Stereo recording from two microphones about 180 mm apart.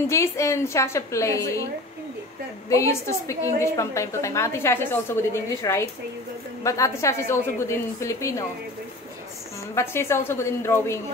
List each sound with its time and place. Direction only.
0.1 s a woman's voice: 15° left (ahead or behind)
2.7 s a woman's voice: 15° left (ahead or behind)
9.8 s a woman's voice: 15° left (ahead or behind)